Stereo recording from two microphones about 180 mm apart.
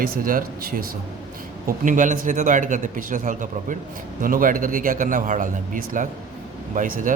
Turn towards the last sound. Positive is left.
turn(degrees=-45)  # may be behind; listen again after turning